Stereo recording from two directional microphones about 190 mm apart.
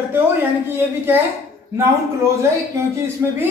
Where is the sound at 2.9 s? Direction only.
10° right (ahead or behind).